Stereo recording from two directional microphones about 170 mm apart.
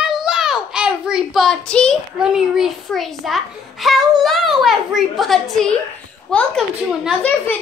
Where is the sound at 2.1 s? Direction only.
5° right (ahead or behind).